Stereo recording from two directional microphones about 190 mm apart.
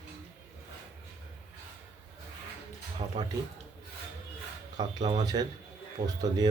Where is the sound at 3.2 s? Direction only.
30° right (ahead or behind).